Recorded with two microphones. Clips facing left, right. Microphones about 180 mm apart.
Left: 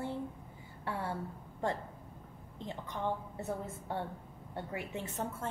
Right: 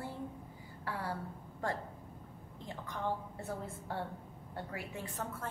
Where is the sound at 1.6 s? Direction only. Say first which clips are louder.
Left 2 dB; 20° left (ahead or behind).